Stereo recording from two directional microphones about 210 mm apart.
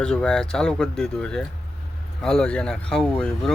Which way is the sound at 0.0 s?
5° left (ahead or behind).